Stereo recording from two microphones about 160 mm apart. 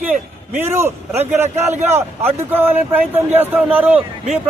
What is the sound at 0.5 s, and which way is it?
A man's voice, 15° right (ahead or behind).